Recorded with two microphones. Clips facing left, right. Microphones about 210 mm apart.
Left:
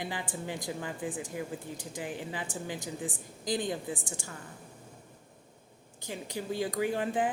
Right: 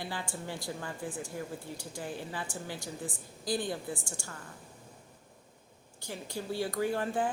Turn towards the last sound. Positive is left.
turn(degrees=20)  # may be behind; listen again after turning